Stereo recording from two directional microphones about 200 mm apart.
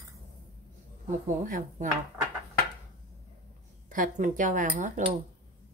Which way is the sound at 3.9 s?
40° right (ahead or behind).